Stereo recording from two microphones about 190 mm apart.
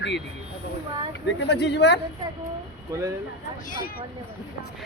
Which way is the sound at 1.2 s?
65° left (ahead or behind).